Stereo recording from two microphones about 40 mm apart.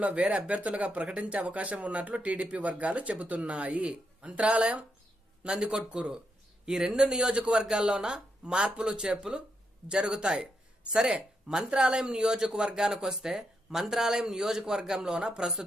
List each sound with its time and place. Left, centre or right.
0.0 s speech: right; by 15.6 s centre